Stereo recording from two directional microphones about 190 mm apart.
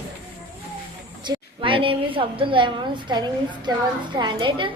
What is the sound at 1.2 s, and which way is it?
A woman's voice, 25° right (ahead or behind).